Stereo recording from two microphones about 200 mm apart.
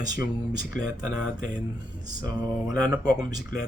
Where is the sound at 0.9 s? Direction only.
20° right (ahead or behind).